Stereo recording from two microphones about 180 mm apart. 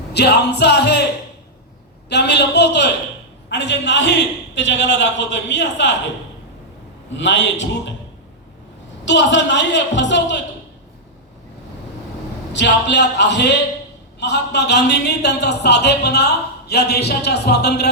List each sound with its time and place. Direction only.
0.1 s a man's voice: 70° left (ahead or behind)
2.0 s a man's voice: 70° left (ahead or behind); by 5.9 s 90° left
7.1 s a man's voice: 85° left
9.0 s a man's voice: 75° left (ahead or behind)
12.5 s a man's voice: 75° left (ahead or behind)